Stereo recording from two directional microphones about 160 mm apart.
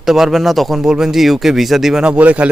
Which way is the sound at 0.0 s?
Centre (ahead or behind).